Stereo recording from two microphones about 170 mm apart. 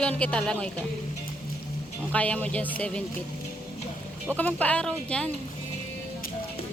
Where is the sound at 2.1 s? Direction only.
10° left (ahead or behind).